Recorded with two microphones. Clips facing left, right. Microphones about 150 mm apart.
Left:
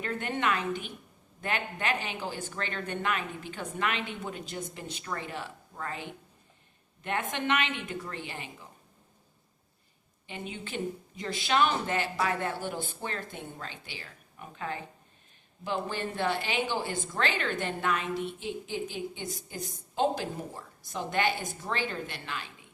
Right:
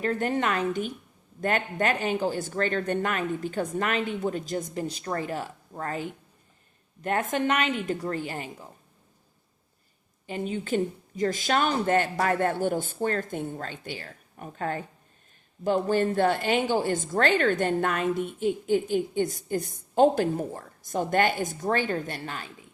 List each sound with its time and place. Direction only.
0.0 s a woman's voice: 35° right (ahead or behind)
10.2 s a woman's voice: 40° right (ahead or behind)